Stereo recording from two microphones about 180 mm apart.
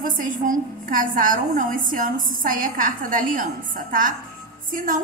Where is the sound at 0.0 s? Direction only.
50° right (ahead or behind).